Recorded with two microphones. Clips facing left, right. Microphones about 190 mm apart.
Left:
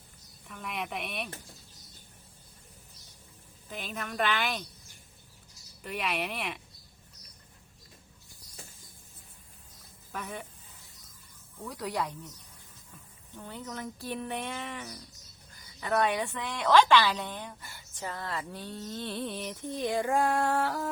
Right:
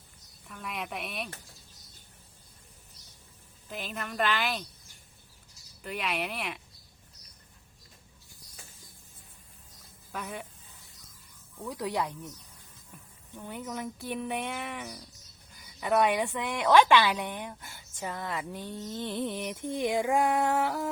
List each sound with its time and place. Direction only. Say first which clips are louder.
0.4 s a woman's voice: left 1 dB; centre (ahead or behind)
3.7 s a woman's voice: even; centre (ahead or behind)
5.8 s a woman's voice: even; centre (ahead or behind)
13.3 s speech: right 3 dB; 15° right (ahead or behind)